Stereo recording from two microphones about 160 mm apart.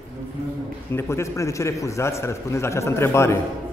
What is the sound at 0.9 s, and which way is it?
A man's voice, 15° left (ahead or behind).